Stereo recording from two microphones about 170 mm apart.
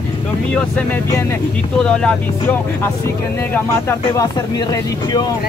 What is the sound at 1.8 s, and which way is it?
Speech, 5° left (ahead or behind).